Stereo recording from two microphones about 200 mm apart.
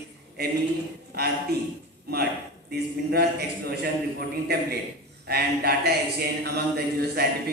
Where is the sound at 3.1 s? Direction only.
55° right (ahead or behind).